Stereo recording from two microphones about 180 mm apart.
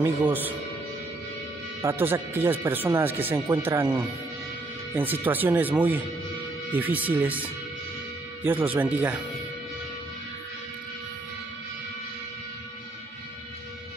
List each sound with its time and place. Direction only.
0.0 s speech: 10° right (ahead or behind)
1.8 s speech: 15° right (ahead or behind)